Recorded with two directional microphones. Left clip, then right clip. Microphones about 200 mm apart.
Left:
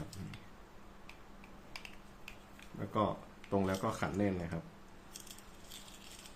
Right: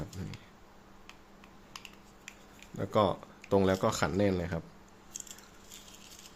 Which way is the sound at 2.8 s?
55° right (ahead or behind).